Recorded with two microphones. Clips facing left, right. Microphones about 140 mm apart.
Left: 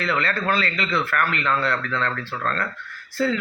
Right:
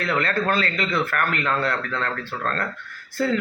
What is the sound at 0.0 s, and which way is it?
A man's voice, 50° right (ahead or behind).